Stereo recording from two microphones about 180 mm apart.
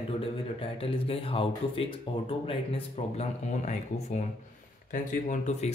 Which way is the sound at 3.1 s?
40° left (ahead or behind).